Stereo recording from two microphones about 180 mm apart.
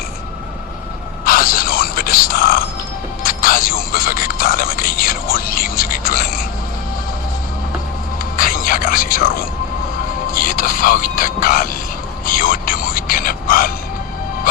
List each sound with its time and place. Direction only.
1.2 s a sound: 55° left (ahead or behind)
3.2 s music: 55° left (ahead or behind)
8.4 s music: 50° left (ahead or behind)
10.3 s music: 50° left (ahead or behind)